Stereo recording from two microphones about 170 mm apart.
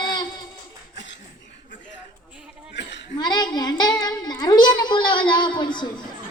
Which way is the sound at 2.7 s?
90° left.